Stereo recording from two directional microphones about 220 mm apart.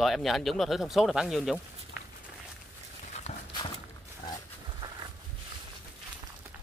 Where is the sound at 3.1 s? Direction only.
30° left (ahead or behind).